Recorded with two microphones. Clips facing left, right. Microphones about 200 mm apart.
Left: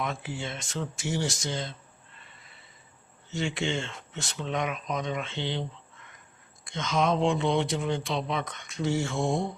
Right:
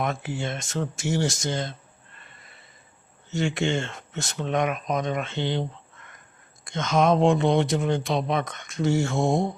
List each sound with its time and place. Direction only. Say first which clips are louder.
0.0 s speech: right 5 dB; 45° right (ahead or behind)
3.3 s speech: right 5 dB; 45° right (ahead or behind)